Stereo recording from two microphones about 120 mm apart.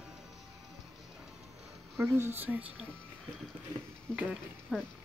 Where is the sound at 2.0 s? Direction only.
20° right (ahead or behind).